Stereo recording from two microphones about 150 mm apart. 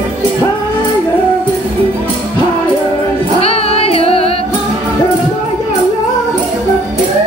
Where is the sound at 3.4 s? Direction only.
40° left (ahead or behind).